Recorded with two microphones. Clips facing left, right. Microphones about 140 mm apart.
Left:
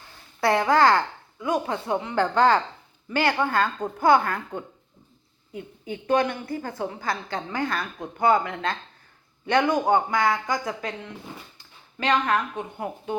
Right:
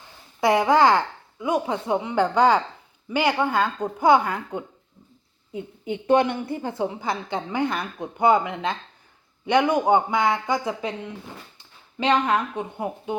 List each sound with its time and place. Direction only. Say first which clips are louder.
0.3 s a woman's voice: right 2 dB; 15° right (ahead or behind)